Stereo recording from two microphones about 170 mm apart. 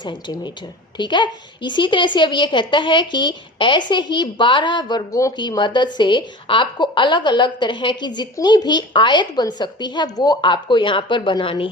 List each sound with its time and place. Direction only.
0.0 s a woman's voice: 25° left (ahead or behind)